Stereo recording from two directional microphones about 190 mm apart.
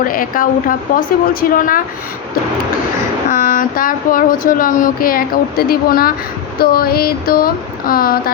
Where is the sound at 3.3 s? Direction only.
45° left (ahead or behind).